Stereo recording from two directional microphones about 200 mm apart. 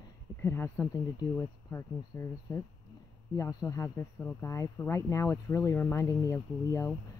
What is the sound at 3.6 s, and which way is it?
Speech, 15° left (ahead or behind).